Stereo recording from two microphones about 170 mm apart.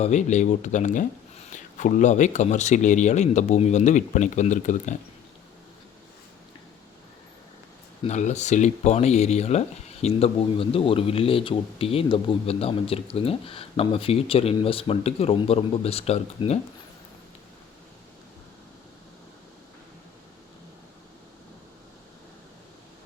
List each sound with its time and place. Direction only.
0.0 s speech: 45° left (ahead or behind)
8.0 s speech: 45° left (ahead or behind)